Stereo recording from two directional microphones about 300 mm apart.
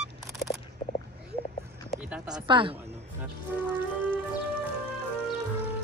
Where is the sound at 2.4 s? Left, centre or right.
Centre.